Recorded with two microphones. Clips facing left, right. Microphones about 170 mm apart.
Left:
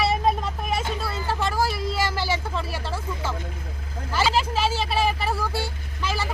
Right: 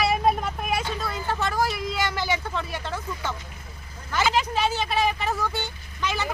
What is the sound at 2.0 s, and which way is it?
Vehicle, 30° left (ahead or behind).